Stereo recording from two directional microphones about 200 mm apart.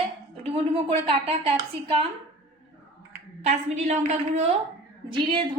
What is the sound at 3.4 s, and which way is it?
A woman's voice, 35° right (ahead or behind).